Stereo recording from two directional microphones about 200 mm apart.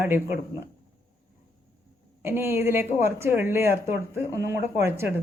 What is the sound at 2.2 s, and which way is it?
A woman's voice, 10° right (ahead or behind).